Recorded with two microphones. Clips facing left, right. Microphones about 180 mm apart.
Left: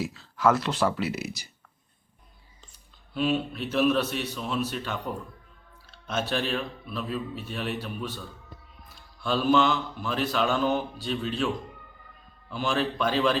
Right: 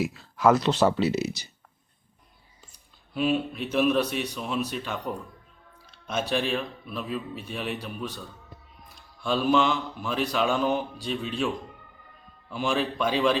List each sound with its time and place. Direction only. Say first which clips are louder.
0.0 s speech: right 2 dB; 15° right (ahead or behind)
3.2 s music: right 1 dB; centre (ahead or behind)
9.2 s music: even; centre (ahead or behind)